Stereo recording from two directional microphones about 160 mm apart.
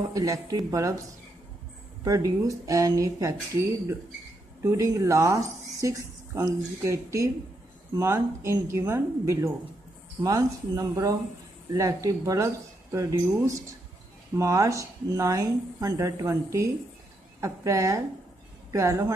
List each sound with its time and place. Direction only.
0.1 s speech: 20° right (ahead or behind)
2.0 s speech: 20° right (ahead or behind)
4.6 s a woman's voice: 20° right (ahead or behind)